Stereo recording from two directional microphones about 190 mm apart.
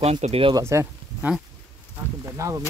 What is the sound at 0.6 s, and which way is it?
Speech, 15° right (ahead or behind).